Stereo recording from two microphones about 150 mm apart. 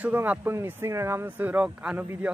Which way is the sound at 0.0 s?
10° right (ahead or behind).